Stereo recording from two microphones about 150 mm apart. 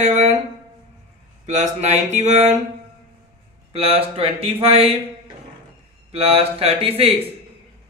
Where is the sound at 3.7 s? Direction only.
40° right (ahead or behind).